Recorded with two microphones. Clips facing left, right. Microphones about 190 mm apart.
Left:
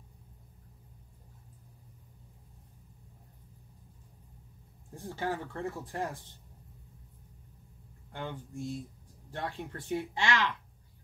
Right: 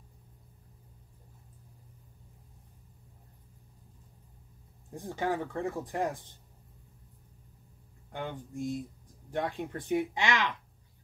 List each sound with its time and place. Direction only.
4.9 s speech: 15° right (ahead or behind)
8.1 s speech: 15° right (ahead or behind)